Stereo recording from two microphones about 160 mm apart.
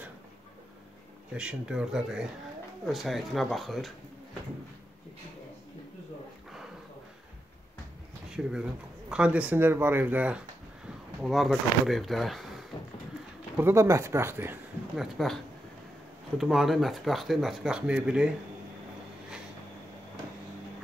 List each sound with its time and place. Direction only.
1.3 s speech: 5° right (ahead or behind)
8.3 s speech: 5° right (ahead or behind)
13.6 s speech: 15° right (ahead or behind)
15.0 s speech: centre (ahead or behind)
16.3 s speech: centre (ahead or behind)